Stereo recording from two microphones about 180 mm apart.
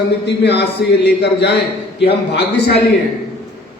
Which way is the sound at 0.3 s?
70° left (ahead or behind).